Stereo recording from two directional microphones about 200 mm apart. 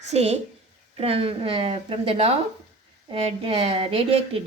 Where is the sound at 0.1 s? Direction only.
30° right (ahead or behind).